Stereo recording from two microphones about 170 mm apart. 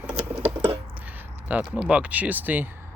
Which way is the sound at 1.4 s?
10° right (ahead or behind).